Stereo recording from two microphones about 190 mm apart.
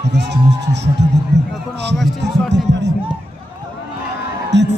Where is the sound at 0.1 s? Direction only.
65° right (ahead or behind).